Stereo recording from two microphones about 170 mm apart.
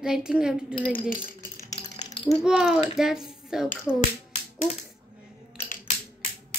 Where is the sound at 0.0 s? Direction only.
5° right (ahead or behind).